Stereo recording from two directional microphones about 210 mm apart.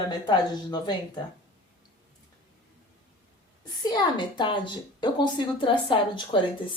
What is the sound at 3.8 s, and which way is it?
A woman's voice, 20° left (ahead or behind).